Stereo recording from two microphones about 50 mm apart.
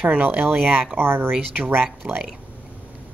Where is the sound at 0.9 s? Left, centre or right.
Right.